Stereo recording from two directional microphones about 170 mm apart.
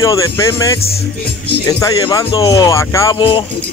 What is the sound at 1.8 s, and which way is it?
Speech, 20° left (ahead or behind).